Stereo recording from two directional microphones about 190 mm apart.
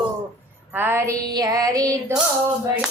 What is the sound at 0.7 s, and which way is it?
Female singing, 10° right (ahead or behind).